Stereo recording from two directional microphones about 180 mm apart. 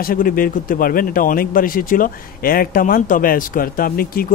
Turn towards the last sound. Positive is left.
turn(degrees=55)  # may be behind; listen again after turning